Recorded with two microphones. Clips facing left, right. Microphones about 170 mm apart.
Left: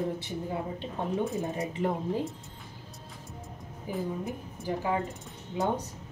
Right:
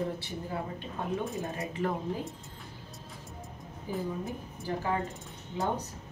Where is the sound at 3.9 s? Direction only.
15° left (ahead or behind).